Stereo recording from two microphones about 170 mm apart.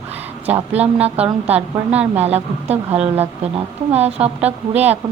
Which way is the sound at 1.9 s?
10° right (ahead or behind).